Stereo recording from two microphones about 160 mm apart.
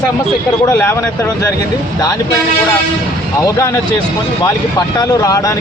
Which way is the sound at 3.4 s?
20° left (ahead or behind).